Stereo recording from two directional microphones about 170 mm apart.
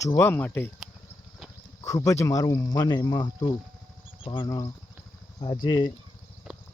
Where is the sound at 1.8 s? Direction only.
20° left (ahead or behind).